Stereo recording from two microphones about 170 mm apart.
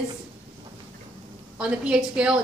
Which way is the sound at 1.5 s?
5° right (ahead or behind).